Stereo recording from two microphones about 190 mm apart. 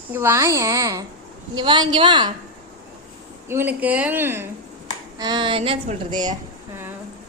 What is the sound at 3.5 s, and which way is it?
A woman's voice, 10° right (ahead or behind).